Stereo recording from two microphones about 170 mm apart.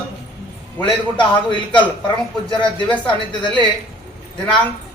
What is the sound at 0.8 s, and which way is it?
A man's voice, 30° left (ahead or behind).